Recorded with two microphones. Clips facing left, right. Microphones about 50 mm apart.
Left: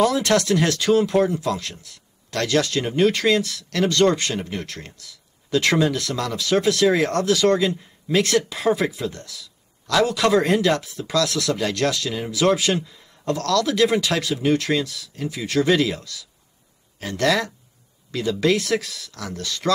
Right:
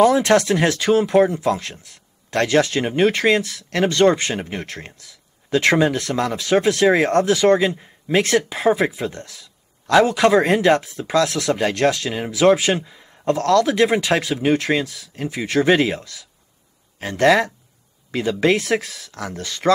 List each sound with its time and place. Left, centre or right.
0.0 s speech: right